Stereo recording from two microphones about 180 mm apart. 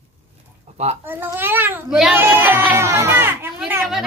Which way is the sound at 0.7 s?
35° right (ahead or behind).